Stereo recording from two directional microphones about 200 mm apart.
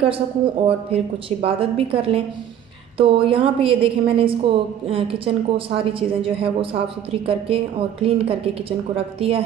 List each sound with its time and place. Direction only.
0.7 s a woman's voice: 30° right (ahead or behind)